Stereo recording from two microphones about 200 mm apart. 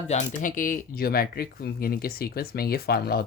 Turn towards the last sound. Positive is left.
turn(degrees=50)  # may be behind; listen again after turning